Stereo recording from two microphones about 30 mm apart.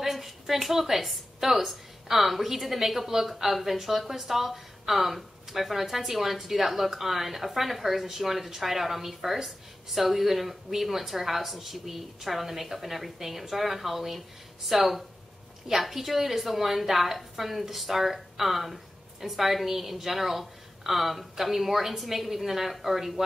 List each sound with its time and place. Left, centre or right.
0.0 s a woman's voice: centre